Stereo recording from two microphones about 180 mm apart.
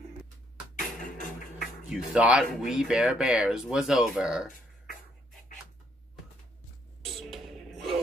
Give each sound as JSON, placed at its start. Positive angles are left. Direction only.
{"t": 0.7, "sound": "music", "side_deg": 50}
{"t": 1.9, "sound": "speech", "side_deg": -5}
{"t": 7.1, "sound": "music", "side_deg": 0}